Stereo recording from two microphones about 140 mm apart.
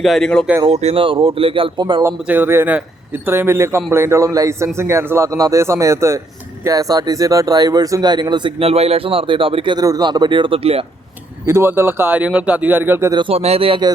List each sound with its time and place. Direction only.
0.0 s speech: 5° left (ahead or behind)
0.7 s speech: 50° right (ahead or behind)
2.2 s a man's voice: 15° right (ahead or behind); by 10.8 s 45° right (ahead or behind)
11.4 s speech: 15° right (ahead or behind)
13.1 s speech: 45° right (ahead or behind)